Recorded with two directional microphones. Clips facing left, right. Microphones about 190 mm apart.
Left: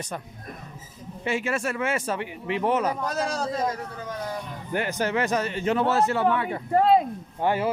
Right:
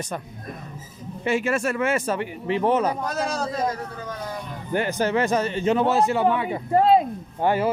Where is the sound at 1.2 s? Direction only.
45° right (ahead or behind); by 3.0 s 30° right (ahead or behind).